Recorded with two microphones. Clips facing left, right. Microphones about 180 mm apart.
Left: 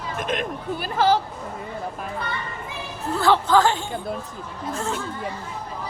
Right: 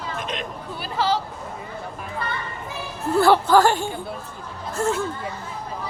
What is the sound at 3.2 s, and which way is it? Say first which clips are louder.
A woman's voice: right 2 dB; 10° right (ahead or behind).